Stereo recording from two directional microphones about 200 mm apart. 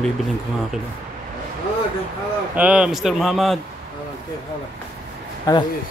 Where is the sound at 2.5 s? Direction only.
5° right (ahead or behind).